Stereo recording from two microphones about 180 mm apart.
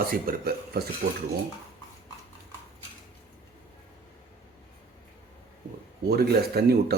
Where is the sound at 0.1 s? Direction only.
55° right (ahead or behind).